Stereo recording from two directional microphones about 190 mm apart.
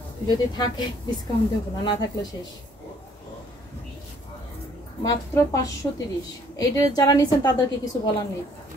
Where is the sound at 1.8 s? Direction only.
20° left (ahead or behind).